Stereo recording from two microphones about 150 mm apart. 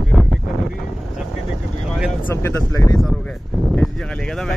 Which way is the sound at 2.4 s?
20° left (ahead or behind).